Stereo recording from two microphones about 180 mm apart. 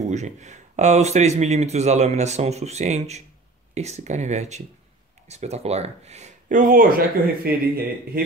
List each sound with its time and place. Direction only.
0.1 s speech: 40° right (ahead or behind); by 8.2 s 55° right (ahead or behind)